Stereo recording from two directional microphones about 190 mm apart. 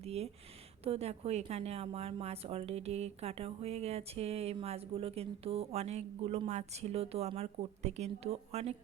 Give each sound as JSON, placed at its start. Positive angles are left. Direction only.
{"t": 0.0, "sound": "a woman's voice", "side_deg": -35}